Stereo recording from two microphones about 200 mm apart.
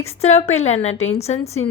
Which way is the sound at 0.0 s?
30° left (ahead or behind).